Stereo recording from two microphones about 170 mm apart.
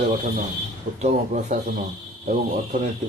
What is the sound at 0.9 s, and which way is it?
A man's voice, 45° right (ahead or behind).